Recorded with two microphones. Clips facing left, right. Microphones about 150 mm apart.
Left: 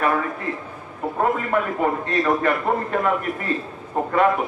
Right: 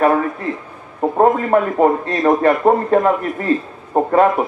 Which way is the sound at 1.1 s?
40° right (ahead or behind).